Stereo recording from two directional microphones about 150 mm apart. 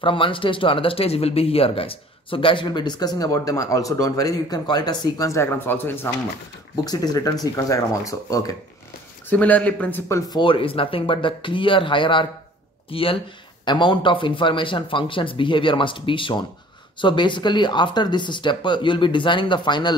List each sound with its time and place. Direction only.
0.0 s speech: 35° left (ahead or behind); by 6.0 s 15° left (ahead or behind)
6.8 s speech: 25° left (ahead or behind)
9.3 s speech: 10° left (ahead or behind)
10.3 s speech: 35° left (ahead or behind)